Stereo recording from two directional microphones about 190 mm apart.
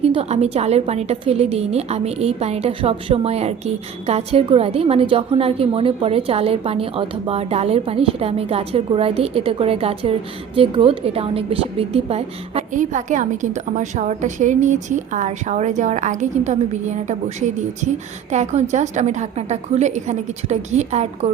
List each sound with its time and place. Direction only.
0.0 s a woman's voice: 30° right (ahead or behind)